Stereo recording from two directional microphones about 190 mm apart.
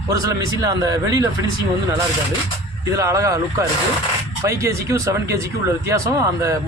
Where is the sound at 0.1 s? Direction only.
20° right (ahead or behind).